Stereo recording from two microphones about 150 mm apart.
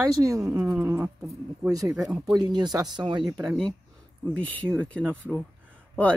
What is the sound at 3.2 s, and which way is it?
Speech, centre (ahead or behind).